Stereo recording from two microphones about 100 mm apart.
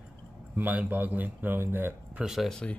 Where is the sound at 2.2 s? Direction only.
Centre (ahead or behind).